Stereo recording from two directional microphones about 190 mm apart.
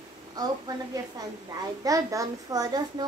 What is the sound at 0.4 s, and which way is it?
Speech, 20° right (ahead or behind).